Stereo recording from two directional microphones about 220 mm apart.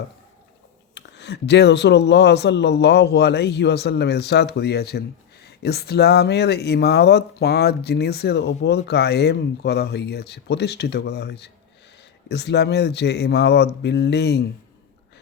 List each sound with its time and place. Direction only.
0.9 s speech: 50° left (ahead or behind)